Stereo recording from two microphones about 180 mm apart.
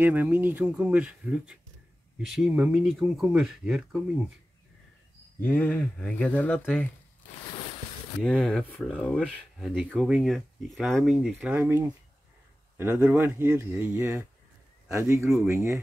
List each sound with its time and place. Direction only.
0.0 s speech: 10° right (ahead or behind)
5.4 s speech: 10° left (ahead or behind)
8.2 s speech: 5° left (ahead or behind)
9.3 s speech: 5° right (ahead or behind)